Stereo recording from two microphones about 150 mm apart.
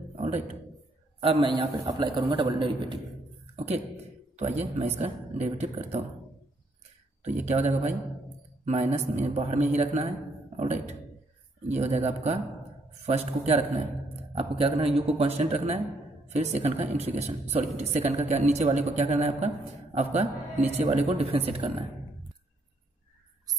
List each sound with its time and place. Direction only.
0.1 s a sound: 50° right (ahead or behind)
1.2 s a man's voice: 35° right (ahead or behind)
3.5 s a man's voice: 45° right (ahead or behind)
7.2 s a woman's voice: 50° right (ahead or behind)
9.2 s a woman's voice: 45° right (ahead or behind)